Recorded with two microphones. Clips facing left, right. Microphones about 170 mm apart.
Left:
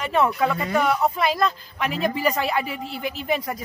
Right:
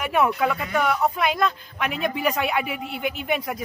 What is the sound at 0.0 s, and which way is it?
Speech, 5° right (ahead or behind).